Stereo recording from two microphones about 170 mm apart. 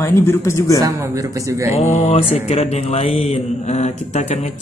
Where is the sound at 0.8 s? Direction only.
20° right (ahead or behind).